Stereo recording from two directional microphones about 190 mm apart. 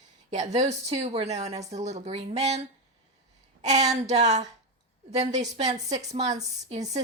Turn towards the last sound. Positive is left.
turn(degrees=-35)  # may be behind; listen again after turning